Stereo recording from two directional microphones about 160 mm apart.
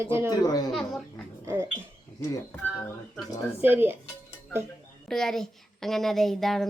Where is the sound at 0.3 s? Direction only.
25° left (ahead or behind).